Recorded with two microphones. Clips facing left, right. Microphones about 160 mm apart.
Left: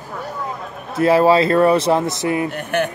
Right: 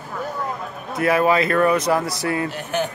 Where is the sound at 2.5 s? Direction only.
60° left (ahead or behind).